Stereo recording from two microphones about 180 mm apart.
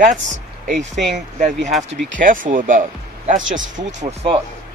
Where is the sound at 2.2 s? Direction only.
50° right (ahead or behind).